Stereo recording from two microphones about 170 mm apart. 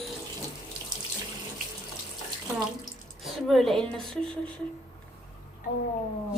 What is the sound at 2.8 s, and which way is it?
Speech, centre (ahead or behind).